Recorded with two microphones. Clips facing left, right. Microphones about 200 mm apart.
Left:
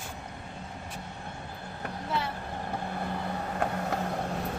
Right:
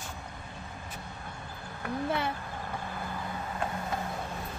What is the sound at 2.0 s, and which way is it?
Speech, 55° right (ahead or behind).